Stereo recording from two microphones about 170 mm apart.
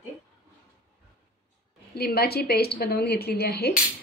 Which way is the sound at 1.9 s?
65° left (ahead or behind).